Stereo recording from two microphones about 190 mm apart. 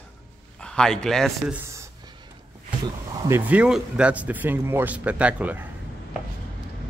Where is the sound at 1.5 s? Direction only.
15° right (ahead or behind).